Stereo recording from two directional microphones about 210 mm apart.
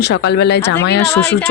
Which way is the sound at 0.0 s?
55° left (ahead or behind).